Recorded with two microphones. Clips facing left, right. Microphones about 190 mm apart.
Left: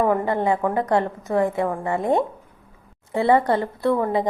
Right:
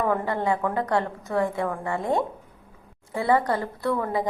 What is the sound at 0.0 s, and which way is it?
A woman's voice, 20° left (ahead or behind).